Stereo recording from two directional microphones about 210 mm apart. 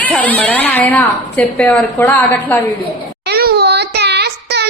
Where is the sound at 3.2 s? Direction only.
50° right (ahead or behind).